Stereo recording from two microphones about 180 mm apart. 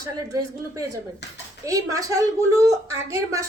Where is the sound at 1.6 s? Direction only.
20° right (ahead or behind).